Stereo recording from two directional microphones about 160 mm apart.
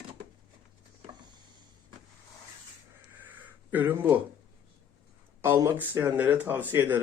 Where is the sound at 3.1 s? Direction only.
10° right (ahead or behind).